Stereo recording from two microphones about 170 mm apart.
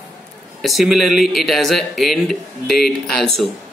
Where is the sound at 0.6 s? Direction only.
Centre (ahead or behind).